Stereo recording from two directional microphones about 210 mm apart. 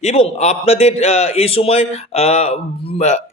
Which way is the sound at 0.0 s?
30° left (ahead or behind).